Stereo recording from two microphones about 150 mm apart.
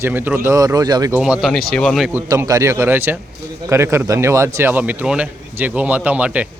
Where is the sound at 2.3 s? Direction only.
20° right (ahead or behind).